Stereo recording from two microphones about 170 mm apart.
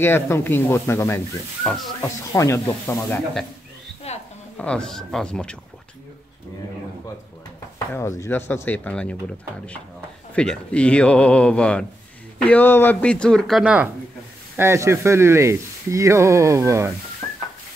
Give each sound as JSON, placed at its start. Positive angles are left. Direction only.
{"t": 0.0, "sound": "a man's voice", "side_deg": 15}
{"t": 1.6, "sound": "speech", "side_deg": 5}
{"t": 2.3, "sound": "a man's voice", "side_deg": 20}
{"t": 4.1, "sound": "a sound", "side_deg": 40}
{"t": 4.6, "sound": "speech", "side_deg": 5}
{"t": 8.2, "sound": "a man's voice", "side_deg": 15}
{"t": 10.3, "sound": "a man's voice", "side_deg": 5}
{"t": 14.6, "sound": "speech", "side_deg": -15}